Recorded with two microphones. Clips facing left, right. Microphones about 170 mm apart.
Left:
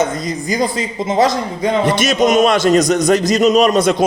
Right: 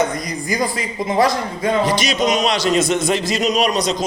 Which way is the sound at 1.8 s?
55° left (ahead or behind).